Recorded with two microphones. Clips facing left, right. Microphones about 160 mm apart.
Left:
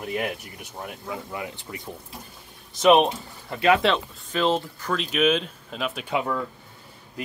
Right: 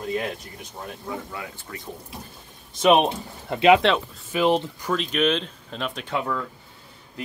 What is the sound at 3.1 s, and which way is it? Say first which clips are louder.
Speech: right 3 dB; 25° right (ahead or behind).